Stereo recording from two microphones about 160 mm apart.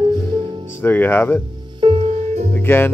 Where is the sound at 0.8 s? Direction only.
10° left (ahead or behind).